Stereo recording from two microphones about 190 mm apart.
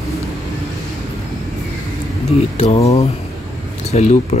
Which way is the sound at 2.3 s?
35° left (ahead or behind).